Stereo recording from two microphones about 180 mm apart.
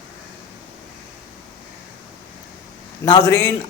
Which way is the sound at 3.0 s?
20° left (ahead or behind).